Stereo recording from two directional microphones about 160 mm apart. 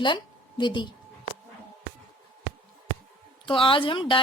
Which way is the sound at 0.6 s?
30° left (ahead or behind).